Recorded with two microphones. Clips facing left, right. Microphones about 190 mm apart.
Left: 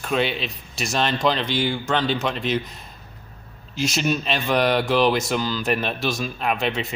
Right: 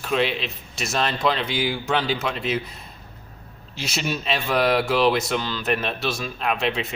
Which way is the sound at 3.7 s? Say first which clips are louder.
Left 5 dB; centre (ahead or behind).